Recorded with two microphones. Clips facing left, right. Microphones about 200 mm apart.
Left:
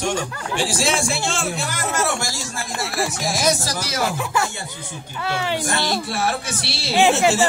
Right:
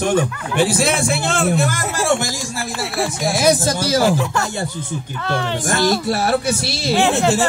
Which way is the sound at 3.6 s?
30° right (ahead or behind).